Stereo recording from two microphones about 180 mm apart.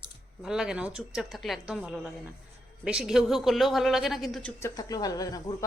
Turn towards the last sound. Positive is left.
turn(degrees=20)  # may be behind; listen again after turning